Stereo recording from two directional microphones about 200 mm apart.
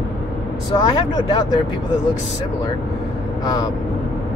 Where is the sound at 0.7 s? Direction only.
20° left (ahead or behind).